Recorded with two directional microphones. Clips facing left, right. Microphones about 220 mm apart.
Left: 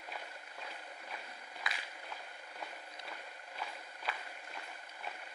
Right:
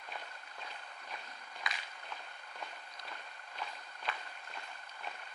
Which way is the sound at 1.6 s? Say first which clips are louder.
Even; 5° left (ahead or behind).